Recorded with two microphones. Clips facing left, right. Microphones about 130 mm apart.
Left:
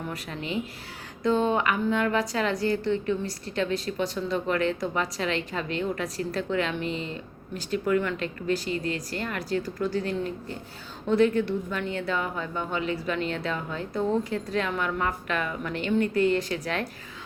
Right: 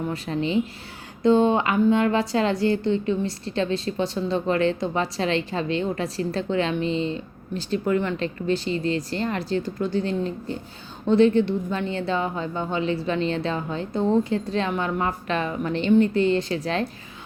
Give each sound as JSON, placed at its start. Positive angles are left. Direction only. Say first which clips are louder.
{"t": 0.1, "sound": "a woman's voice", "louder": "right 9 dB", "side_deg": -30}